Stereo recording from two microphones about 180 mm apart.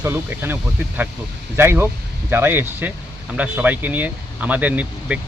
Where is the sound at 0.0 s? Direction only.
15° right (ahead or behind).